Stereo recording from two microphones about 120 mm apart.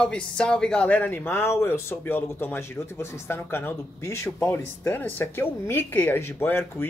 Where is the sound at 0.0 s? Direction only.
10° left (ahead or behind).